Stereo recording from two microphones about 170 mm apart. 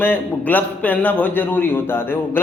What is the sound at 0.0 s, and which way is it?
A man's voice, 10° left (ahead or behind).